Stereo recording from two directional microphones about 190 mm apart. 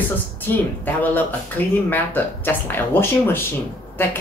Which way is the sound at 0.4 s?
10° left (ahead or behind).